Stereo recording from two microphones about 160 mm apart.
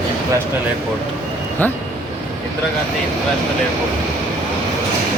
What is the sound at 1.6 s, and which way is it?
Speech, 10° left (ahead or behind).